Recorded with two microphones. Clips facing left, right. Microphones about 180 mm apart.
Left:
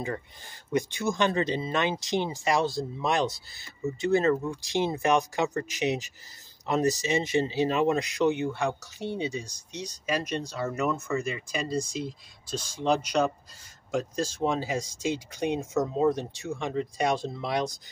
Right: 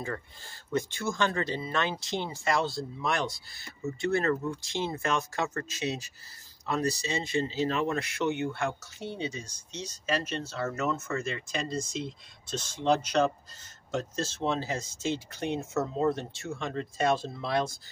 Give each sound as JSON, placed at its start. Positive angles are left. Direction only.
{"t": 0.7, "sound": "speech", "side_deg": 15}